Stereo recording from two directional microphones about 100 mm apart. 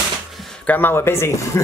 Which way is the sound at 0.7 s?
20° left (ahead or behind).